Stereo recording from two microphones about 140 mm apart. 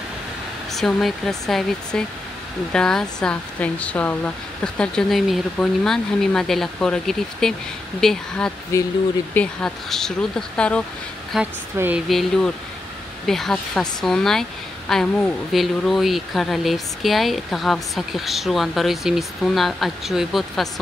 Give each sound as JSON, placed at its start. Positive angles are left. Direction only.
{"t": 0.7, "sound": "speech", "side_deg": 5}
{"t": 11.8, "sound": "speech", "side_deg": -20}
{"t": 12.1, "sound": "speech", "side_deg": 0}